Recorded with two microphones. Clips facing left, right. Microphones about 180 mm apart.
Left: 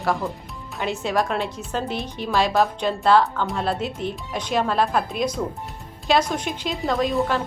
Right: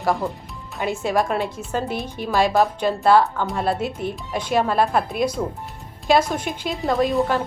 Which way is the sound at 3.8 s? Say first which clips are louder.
Right 1 dB; 50° right (ahead or behind).